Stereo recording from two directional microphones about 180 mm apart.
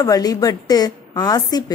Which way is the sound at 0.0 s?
20° left (ahead or behind).